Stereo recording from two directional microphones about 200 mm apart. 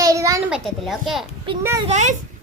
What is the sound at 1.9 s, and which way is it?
Speech, 35° right (ahead or behind).